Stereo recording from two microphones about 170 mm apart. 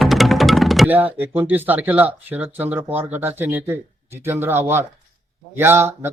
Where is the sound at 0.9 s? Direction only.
10° right (ahead or behind).